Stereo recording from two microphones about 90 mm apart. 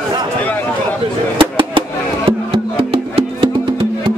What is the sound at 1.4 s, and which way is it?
Music, 70° right (ahead or behind).